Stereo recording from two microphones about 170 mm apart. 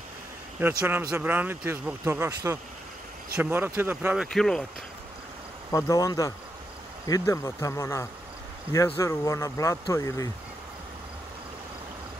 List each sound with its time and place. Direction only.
0.6 s speech: 10° right (ahead or behind)
5.7 s speech: 20° left (ahead or behind)